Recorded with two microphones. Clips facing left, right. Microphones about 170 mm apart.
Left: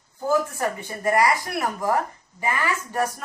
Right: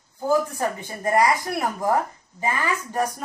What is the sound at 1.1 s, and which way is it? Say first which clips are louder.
Speech: right 2 dB; 20° right (ahead or behind).